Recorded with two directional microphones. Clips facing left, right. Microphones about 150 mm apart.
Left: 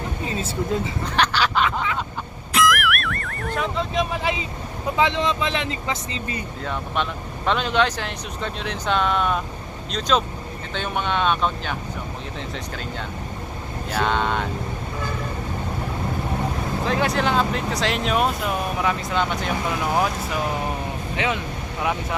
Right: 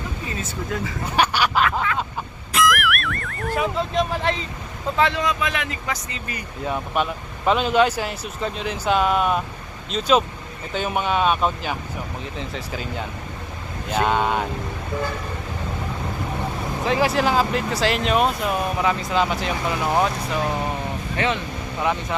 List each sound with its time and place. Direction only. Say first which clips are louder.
0.3 s speech: left 5 dB; 30° left (ahead or behind)
1.0 s duck: right 3 dB; 10° right (ahead or behind)
2.6 s music: even; centre (ahead or behind)
4.9 s speech: even; 20° left (ahead or behind)
6.7 s speech: right 3 dB; 5° right (ahead or behind)
16.8 s speech: right 3 dB; centre (ahead or behind)